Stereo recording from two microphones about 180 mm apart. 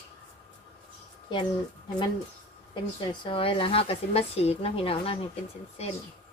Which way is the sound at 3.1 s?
30° left (ahead or behind).